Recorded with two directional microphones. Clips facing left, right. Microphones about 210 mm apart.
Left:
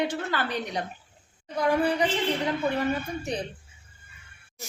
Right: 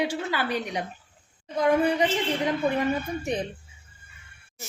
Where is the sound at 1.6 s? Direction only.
20° right (ahead or behind).